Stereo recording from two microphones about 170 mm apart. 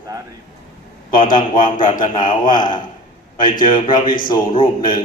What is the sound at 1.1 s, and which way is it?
A man's voice, 50° left (ahead or behind).